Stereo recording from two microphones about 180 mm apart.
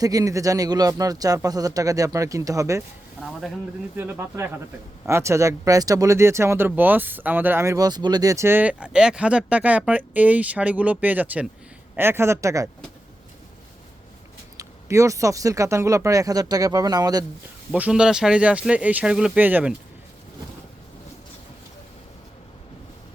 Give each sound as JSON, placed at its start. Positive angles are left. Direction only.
{"t": 0.0, "sound": "speech", "side_deg": -20}
{"t": 3.9, "sound": "speech", "side_deg": -10}
{"t": 14.6, "sound": "speech", "side_deg": -15}
{"t": 17.7, "sound": "speech", "side_deg": -5}